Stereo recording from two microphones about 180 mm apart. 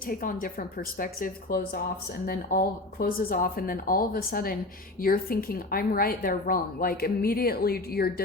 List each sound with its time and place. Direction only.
0.1 s speech: 50° left (ahead or behind)